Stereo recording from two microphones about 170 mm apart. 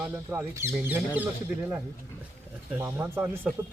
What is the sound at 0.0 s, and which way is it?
Speech, 10° right (ahead or behind).